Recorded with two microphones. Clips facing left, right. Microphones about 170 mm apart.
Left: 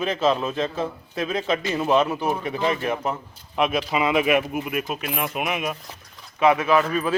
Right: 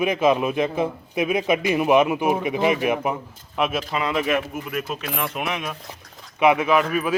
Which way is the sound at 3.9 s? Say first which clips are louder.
Left 5 dB; 10° left (ahead or behind).